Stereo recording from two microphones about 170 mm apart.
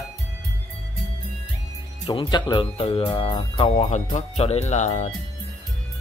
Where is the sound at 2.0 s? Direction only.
30° left (ahead or behind); by 5.1 s 45° left (ahead or behind).